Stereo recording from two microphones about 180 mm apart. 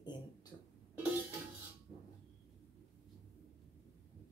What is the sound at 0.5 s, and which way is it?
Music, 25° left (ahead or behind).